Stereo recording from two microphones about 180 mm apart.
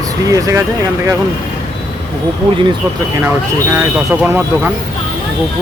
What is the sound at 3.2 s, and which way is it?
Speech, 10° right (ahead or behind).